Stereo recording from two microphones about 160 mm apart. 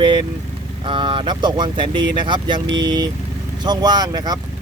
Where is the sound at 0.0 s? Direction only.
30° right (ahead or behind).